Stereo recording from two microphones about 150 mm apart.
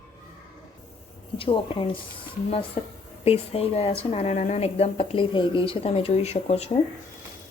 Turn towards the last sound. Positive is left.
turn(degrees=45)  # may be behind; listen again after turning